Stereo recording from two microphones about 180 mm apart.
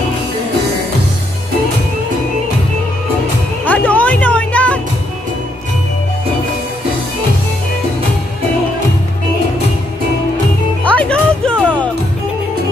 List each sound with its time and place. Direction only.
3.6 s music: 10° left (ahead or behind)
10.8 s music: 5° left (ahead or behind)